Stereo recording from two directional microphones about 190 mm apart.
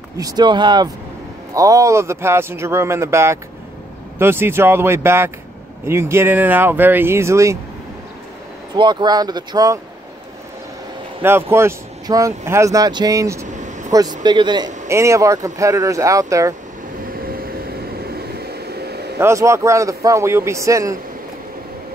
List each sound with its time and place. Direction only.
0.2 s speech: 25° right (ahead or behind)
8.7 s speech: 20° right (ahead or behind)
11.5 s speech: 15° right (ahead or behind)
13.5 s vehicle: 40° right (ahead or behind)
14.2 s speech: 25° right (ahead or behind)
17.1 s vehicle: 50° right (ahead or behind)
19.1 s speech: 15° right (ahead or behind)